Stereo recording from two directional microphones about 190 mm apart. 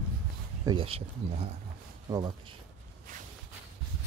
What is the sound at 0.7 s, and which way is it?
Speech, 30° right (ahead or behind).